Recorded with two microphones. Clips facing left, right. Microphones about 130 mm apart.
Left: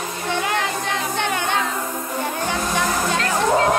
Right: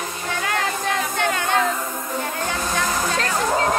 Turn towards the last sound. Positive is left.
turn(degrees=30)  # may be behind; listen again after turning